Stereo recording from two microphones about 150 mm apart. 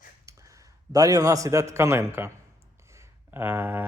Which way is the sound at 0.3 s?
20° right (ahead or behind).